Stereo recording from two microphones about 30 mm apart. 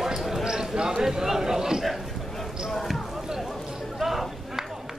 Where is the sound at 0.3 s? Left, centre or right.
Centre.